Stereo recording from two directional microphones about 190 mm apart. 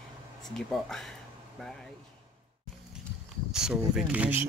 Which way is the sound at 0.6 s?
5° left (ahead or behind).